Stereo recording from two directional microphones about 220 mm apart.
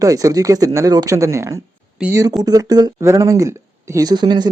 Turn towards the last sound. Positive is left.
turn(degrees=-20)  # may be behind; listen again after turning